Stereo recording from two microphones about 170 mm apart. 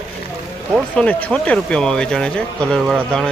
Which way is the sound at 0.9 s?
5° left (ahead or behind).